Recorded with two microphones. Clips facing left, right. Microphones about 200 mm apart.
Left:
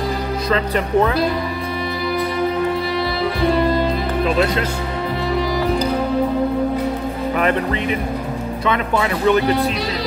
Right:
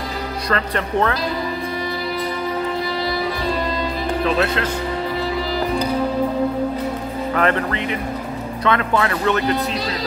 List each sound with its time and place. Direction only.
0.5 s speech: 10° left (ahead or behind)
7.3 s speech: 15° left (ahead or behind)